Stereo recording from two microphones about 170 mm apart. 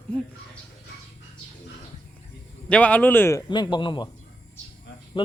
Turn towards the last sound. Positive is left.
turn(degrees=25)  # may be behind; listen again after turning